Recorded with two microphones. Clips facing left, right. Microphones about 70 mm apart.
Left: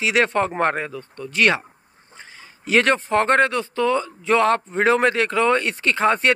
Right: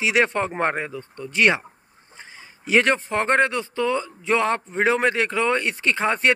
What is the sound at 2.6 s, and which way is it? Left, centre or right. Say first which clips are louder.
A man's voice: left 1 dB; centre.